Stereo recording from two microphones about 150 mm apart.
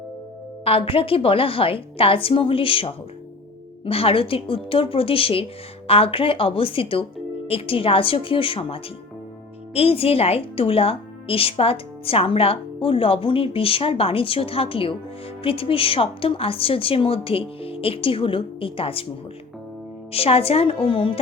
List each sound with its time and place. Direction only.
0.6 s a woman's voice: 40° left (ahead or behind)
20.1 s a woman's voice: 40° left (ahead or behind)